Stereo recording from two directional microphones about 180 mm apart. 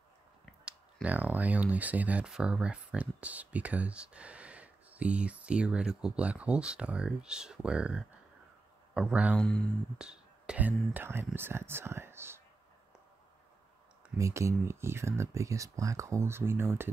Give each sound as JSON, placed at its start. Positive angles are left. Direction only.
{"t": 1.0, "sound": "speech", "side_deg": -10}
{"t": 9.4, "sound": "speech", "side_deg": 5}
{"t": 14.1, "sound": "speech", "side_deg": -15}